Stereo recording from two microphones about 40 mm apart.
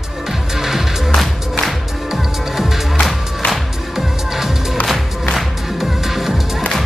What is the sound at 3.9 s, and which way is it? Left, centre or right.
Music, centre.